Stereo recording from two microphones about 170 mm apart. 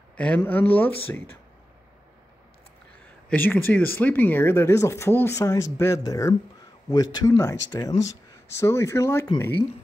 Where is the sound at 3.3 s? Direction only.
10° left (ahead or behind).